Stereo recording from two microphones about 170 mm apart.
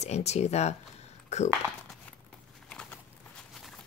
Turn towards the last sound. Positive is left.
turn(degrees=10)  # may be behind; listen again after turning